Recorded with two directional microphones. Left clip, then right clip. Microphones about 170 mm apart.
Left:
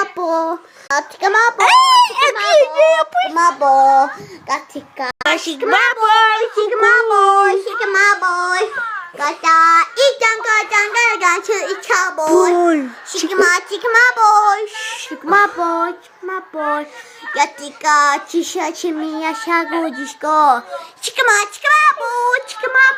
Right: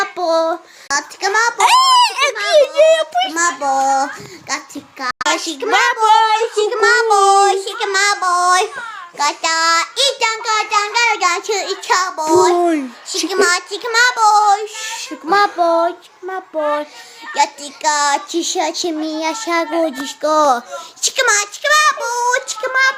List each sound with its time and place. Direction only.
0.9 s child singing: 15° right (ahead or behind)
1.9 s a sound: 25° right (ahead or behind)
2.7 s child singing: 10° right (ahead or behind)
4.4 s a child's voice: 5° right (ahead or behind)
13.3 s child singing: 5° right (ahead or behind)
20.3 s speech: 45° right (ahead or behind)
21.0 s child singing: 30° right (ahead or behind); by 22.8 s 10° right (ahead or behind)